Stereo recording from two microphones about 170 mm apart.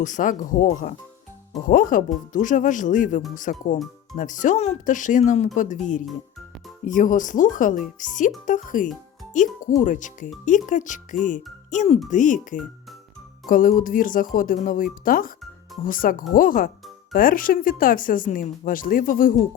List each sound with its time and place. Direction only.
0.0 s a child's voice: 50° left (ahead or behind)